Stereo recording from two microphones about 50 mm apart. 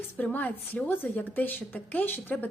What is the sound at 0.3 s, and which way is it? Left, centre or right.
Speech, left.